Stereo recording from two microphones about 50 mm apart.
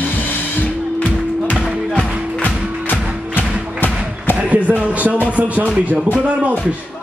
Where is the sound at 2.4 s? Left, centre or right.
Left.